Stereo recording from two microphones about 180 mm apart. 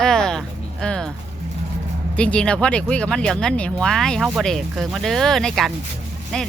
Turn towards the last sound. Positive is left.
turn(degrees=5)  # may be behind; listen again after turning